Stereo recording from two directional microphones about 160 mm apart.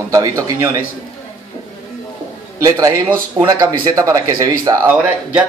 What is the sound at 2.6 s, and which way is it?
A man's voice, 20° right (ahead or behind).